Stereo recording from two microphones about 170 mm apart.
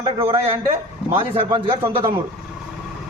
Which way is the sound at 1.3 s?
30° right (ahead or behind).